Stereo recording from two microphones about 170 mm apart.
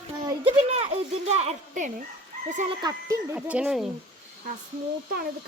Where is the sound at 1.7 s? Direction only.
50° right (ahead or behind).